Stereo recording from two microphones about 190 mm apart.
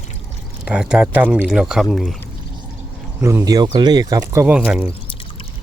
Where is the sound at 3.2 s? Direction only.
15° right (ahead or behind).